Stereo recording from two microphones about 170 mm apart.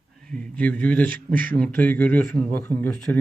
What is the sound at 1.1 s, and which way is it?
Speech, 55° right (ahead or behind).